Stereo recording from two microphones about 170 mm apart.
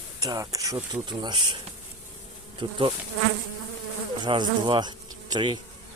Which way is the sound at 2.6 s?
30° right (ahead or behind).